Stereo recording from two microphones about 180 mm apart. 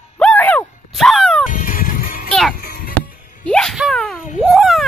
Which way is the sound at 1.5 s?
50° left (ahead or behind).